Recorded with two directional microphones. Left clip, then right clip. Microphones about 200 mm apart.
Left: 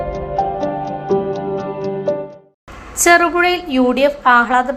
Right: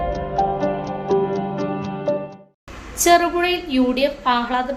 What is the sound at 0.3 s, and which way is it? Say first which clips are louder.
Music: left 2 dB; 5° left (ahead or behind).